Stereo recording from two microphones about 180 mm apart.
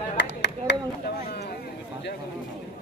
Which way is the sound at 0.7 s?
75° left (ahead or behind).